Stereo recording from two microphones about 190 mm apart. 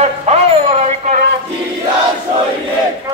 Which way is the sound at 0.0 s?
35° right (ahead or behind).